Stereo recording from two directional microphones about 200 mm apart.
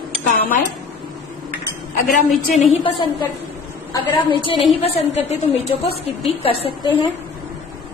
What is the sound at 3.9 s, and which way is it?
A woman's voice, 25° left (ahead or behind).